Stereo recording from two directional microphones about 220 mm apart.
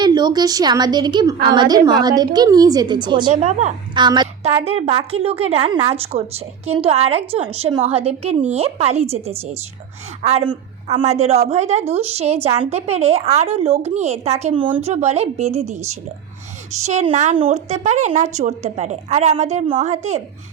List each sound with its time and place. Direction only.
0.0 s a woman's voice: 20° right (ahead or behind)
3.3 s a woman's voice: 30° right (ahead or behind)
3.9 s a woman's voice: 20° right (ahead or behind)
16.8 s a woman's voice: 30° right (ahead or behind)